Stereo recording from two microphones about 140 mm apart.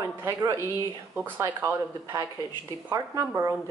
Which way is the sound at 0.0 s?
20° right (ahead or behind).